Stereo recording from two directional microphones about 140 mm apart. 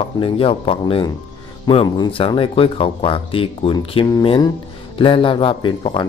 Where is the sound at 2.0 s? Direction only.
40° left (ahead or behind).